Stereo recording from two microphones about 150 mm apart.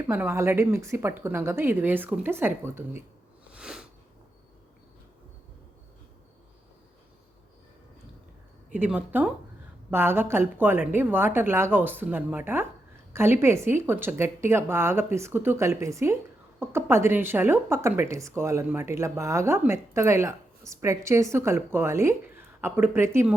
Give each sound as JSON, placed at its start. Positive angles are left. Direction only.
{"t": 0.1, "sound": "speech", "side_deg": -15}
{"t": 3.5, "sound": "sniff", "side_deg": -5}
{"t": 8.7, "sound": "speech", "side_deg": -10}